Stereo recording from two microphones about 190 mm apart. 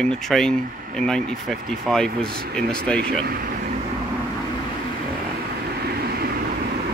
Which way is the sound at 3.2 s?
50° right (ahead or behind).